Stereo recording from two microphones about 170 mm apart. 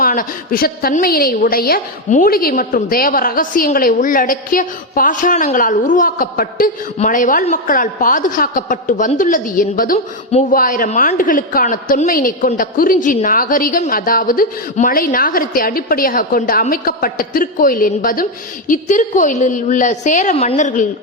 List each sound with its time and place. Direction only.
0.0 s a woman's voice: 55° left (ahead or behind)